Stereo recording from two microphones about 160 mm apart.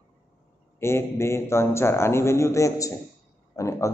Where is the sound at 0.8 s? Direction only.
15° left (ahead or behind).